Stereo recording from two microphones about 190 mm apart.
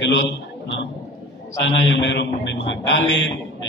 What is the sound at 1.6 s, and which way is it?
A man's voice, 75° left (ahead or behind).